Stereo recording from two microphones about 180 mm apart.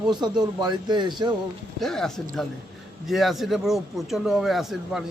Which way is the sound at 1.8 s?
Centre (ahead or behind).